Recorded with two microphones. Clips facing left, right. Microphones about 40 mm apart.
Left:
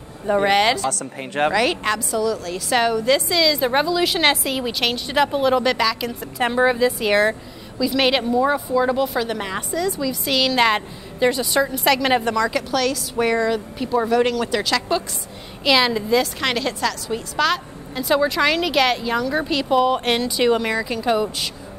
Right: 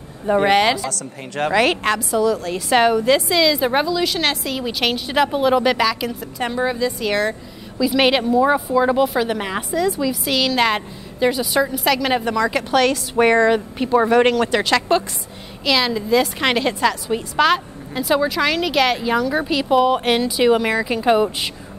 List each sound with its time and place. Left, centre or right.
0.3 s speech: right
1.5 s a woman's voice: right; by 6.1 s centre
6.3 s a woman's voice: centre
7.8 s a woman's voice: centre
10.2 s a woman's voice: centre
12.4 s speech: right
15.6 s a woman's voice: centre
16.2 s a woman's voice: centre
18.0 s a woman's voice: centre; by 21.5 s right